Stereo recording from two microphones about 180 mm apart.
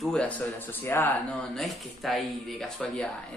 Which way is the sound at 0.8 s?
15° left (ahead or behind).